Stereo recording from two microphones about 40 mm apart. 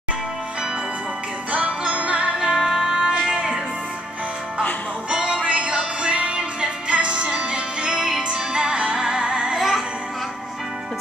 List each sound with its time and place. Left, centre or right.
1.5 s music: right
2.3 s music: centre
5.1 s music: right
9.6 s music: centre